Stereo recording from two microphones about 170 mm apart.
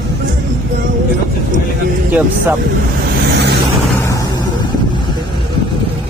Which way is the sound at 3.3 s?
85° right.